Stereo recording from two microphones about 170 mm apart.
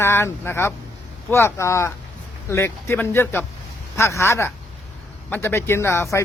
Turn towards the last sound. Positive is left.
turn(degrees=15)  # may be behind; listen again after turning